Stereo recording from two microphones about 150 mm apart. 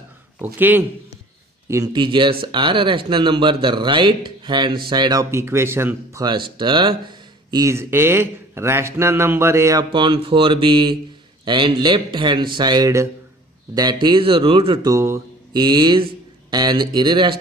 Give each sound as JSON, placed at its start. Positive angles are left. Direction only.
{"t": 0.6, "sound": "speech", "side_deg": -15}
{"t": 1.9, "sound": "speech", "side_deg": -30}
{"t": 6.2, "sound": "speech", "side_deg": -30}
{"t": 9.9, "sound": "speech", "side_deg": -35}
{"t": 14.9, "sound": "speech", "side_deg": -15}
{"t": 15.5, "sound": "speech", "side_deg": -30}